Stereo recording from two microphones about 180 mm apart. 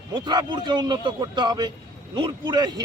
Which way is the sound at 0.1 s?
25° right (ahead or behind).